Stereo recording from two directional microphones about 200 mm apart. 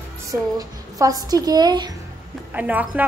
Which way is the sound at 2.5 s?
10° right (ahead or behind).